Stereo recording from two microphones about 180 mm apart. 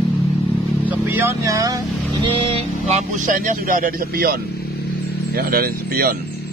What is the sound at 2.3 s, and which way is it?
Speech, 30° right (ahead or behind).